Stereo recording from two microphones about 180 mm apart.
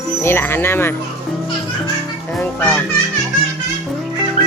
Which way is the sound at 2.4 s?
10° left (ahead or behind).